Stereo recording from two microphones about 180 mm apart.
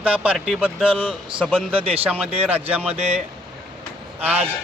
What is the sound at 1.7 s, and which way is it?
Speech, 30° right (ahead or behind).